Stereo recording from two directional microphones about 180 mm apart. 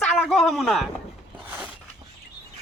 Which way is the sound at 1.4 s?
10° right (ahead or behind).